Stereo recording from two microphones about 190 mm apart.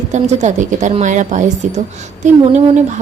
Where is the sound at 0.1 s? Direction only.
40° right (ahead or behind).